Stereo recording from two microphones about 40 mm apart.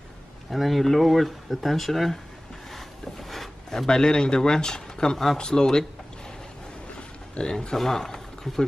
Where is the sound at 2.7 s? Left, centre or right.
Centre.